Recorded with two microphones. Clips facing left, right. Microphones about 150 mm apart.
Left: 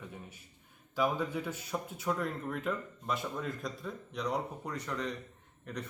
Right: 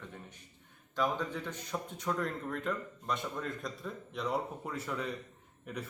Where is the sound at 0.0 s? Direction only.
10° left (ahead or behind).